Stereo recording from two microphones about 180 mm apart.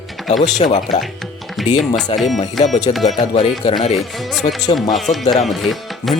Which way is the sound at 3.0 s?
40° left (ahead or behind).